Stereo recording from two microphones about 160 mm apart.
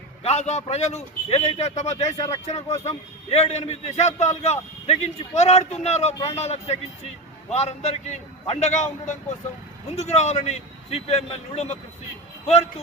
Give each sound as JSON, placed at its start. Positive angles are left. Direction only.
{"t": 0.2, "sound": "a man's voice", "side_deg": 40}